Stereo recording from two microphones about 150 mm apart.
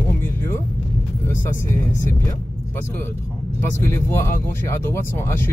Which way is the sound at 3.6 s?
15° left (ahead or behind).